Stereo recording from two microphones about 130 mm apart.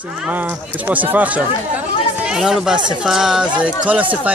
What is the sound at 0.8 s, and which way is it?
Speech, 10° right (ahead or behind).